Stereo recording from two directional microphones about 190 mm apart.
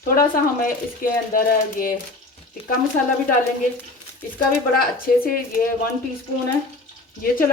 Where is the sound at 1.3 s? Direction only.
50° left (ahead or behind).